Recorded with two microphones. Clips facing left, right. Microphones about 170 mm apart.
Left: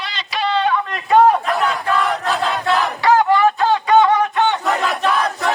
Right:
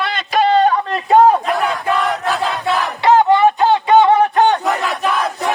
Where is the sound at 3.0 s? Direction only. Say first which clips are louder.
Right 3 dB; 20° right (ahead or behind); by 4.6 s 35° right (ahead or behind).